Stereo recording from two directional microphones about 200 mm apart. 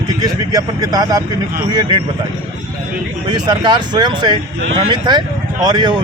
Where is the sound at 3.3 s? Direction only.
20° right (ahead or behind).